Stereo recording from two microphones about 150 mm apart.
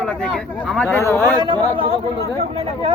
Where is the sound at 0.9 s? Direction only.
15° left (ahead or behind).